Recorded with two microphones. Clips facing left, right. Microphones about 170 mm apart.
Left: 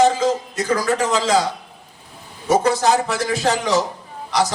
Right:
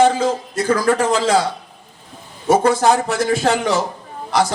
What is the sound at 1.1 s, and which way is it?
Speech, 40° left (ahead or behind).